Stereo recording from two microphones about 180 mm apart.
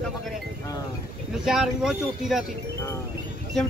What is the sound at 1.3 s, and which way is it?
Speech, 5° right (ahead or behind).